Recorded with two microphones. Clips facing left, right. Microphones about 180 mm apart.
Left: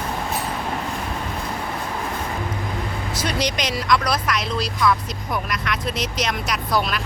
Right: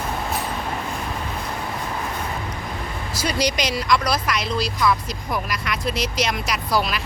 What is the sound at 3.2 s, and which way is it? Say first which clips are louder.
Speech: right 2 dB; centre (ahead or behind).